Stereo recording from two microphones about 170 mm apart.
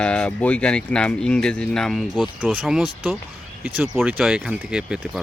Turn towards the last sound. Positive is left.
turn(degrees=-5)  # may be behind; listen again after turning